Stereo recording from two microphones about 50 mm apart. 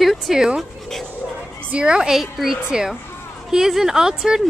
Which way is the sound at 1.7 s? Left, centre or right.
Right.